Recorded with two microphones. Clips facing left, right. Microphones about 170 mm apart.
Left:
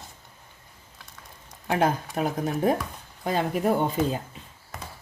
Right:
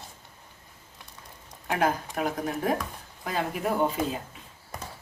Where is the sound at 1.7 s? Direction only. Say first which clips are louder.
Left 2 dB; 30° left (ahead or behind).